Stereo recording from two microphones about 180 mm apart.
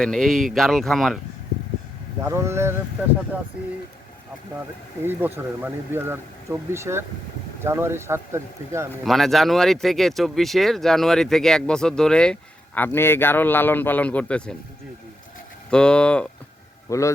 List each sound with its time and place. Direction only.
0.0 s speech: 5° left (ahead or behind)
2.2 s speech: 15° right (ahead or behind)
5.0 s speech: 10° right (ahead or behind)
9.0 s speech: centre (ahead or behind)
15.7 s speech: 5° left (ahead or behind)
16.9 s a man's voice: 15° left (ahead or behind)